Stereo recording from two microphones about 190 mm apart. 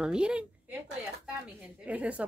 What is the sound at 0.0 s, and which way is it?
A woman's voice, 5° right (ahead or behind).